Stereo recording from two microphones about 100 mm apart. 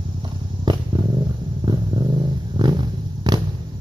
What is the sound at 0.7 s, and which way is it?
Dog, 50° right (ahead or behind).